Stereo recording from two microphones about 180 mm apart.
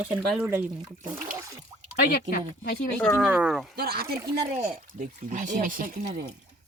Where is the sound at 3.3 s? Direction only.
5° right (ahead or behind).